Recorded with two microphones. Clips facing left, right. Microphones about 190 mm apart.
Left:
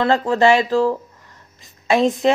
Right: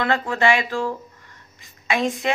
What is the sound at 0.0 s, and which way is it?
Speech, 35° left (ahead or behind).